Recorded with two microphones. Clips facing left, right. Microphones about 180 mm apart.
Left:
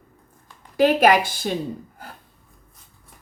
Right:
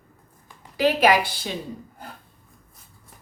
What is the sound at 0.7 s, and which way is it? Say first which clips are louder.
Speech: left 3 dB; 50° left (ahead or behind).